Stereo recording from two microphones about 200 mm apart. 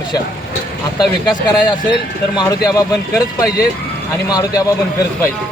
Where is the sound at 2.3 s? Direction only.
20° left (ahead or behind).